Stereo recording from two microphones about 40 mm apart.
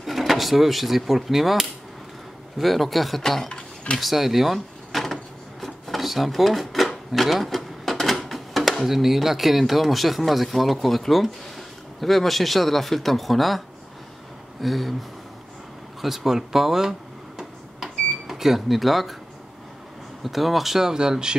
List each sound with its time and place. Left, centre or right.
0.0 s speech: centre
3.4 s stir: left
4.0 s drawer open or close: centre
7.2 s sewing machine: centre
8.3 s a sound: centre
8.8 s speech: centre
14.6 s speech: centre
16.0 s speech: centre
17.4 s a sound: centre
20.2 s speech: centre